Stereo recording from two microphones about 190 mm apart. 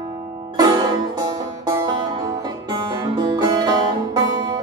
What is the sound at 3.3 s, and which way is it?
Music, 20° right (ahead or behind).